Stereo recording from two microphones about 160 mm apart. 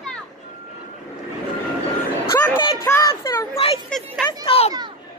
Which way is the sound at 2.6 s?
30° left (ahead or behind).